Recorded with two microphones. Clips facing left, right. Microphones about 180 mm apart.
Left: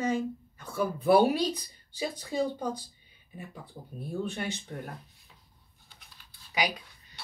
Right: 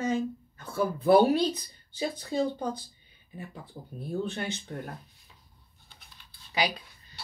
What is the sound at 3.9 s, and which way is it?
Speech, 10° left (ahead or behind).